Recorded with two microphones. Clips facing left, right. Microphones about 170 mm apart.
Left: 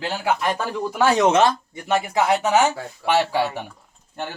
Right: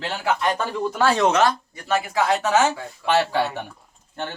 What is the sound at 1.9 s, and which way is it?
Speech, 15° left (ahead or behind).